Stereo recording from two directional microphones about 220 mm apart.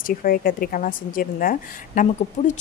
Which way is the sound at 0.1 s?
40° left (ahead or behind).